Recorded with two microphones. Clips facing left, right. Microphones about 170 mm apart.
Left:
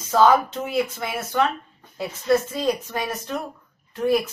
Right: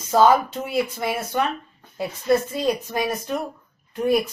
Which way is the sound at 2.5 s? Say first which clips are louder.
Right 1 dB; 15° right (ahead or behind).